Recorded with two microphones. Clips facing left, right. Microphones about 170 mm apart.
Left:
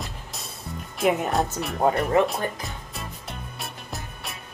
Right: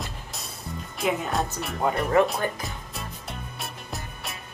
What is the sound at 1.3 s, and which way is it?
Speech, centre (ahead or behind).